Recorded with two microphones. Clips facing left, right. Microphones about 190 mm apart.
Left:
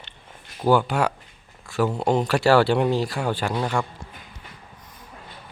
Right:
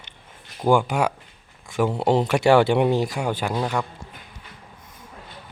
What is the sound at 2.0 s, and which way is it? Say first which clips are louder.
Speech: right 3 dB; 25° right (ahead or behind).